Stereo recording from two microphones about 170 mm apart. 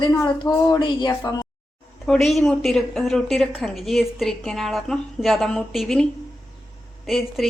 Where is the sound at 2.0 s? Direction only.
Centre (ahead or behind).